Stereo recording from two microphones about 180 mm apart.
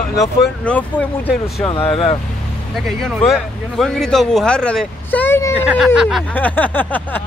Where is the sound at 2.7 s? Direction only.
Centre (ahead or behind).